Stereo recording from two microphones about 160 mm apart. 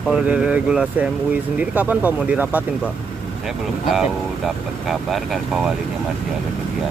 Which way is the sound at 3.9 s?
Centre (ahead or behind).